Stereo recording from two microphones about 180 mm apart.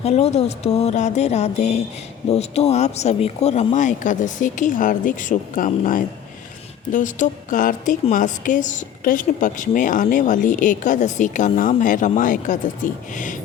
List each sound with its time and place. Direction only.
0.0 s music: 35° left (ahead or behind)
2.3 s a woman's voice: 35° left (ahead or behind)